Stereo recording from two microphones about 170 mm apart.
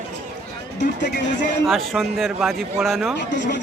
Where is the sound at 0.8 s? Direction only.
75° left (ahead or behind).